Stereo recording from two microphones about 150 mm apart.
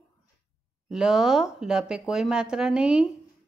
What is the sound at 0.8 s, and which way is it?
A woman's voice, 5° right (ahead or behind).